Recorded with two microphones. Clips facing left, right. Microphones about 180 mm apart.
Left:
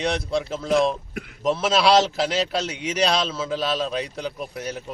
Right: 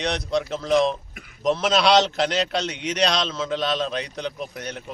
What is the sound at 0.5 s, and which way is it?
A man's voice, 5° left (ahead or behind).